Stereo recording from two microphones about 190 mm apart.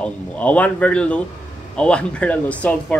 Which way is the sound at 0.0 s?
5° left (ahead or behind).